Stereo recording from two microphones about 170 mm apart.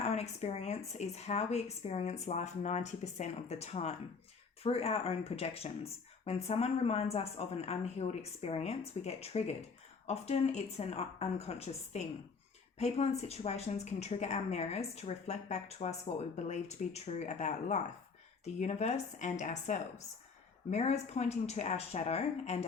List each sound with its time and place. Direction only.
0.0 s a woman's voice: 40° left (ahead or behind)